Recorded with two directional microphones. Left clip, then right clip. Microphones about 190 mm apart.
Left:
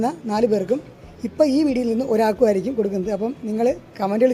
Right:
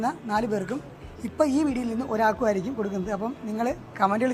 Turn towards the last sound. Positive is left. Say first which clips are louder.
# left 4 dB
turn(degrees=40)  # may be behind; listen again after turning